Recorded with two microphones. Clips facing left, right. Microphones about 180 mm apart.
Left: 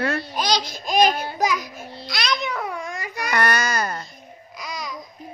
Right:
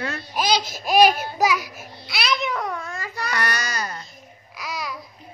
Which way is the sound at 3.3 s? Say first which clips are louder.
Left 7 dB; 55° left (ahead or behind).